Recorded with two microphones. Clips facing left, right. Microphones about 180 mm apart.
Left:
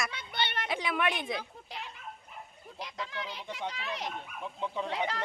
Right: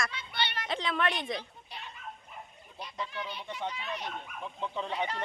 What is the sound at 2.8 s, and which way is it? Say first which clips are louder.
Speech: right 1 dB; 90° left.